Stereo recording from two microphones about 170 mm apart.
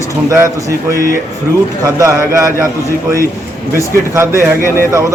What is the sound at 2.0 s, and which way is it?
Speech, 15° right (ahead or behind).